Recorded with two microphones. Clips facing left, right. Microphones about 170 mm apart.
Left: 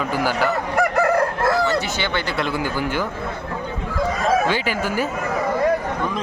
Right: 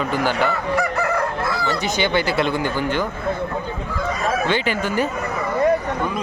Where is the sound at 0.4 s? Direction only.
50° left (ahead or behind).